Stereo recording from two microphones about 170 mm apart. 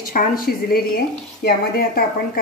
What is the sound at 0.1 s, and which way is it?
A woman's voice, 60° left (ahead or behind).